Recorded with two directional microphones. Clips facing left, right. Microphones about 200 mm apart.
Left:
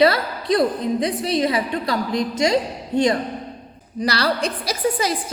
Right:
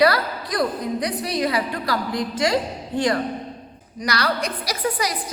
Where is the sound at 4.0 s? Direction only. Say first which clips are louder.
Left 3 dB; 30° left (ahead or behind).